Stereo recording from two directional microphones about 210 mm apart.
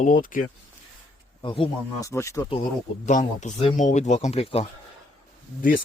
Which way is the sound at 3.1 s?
35° left (ahead or behind).